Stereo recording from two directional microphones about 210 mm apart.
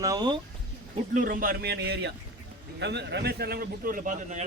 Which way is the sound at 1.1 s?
40° right (ahead or behind).